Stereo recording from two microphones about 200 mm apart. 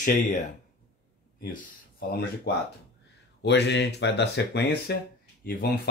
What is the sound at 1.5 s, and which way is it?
Speech, 50° left (ahead or behind).